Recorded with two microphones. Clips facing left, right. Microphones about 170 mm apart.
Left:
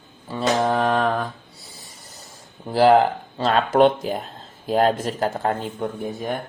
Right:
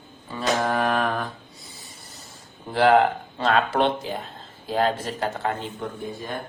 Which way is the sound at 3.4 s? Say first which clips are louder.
Left 5 dB; 45° left (ahead or behind).